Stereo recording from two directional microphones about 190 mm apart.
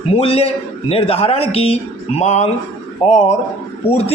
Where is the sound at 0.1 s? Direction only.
30° left (ahead or behind).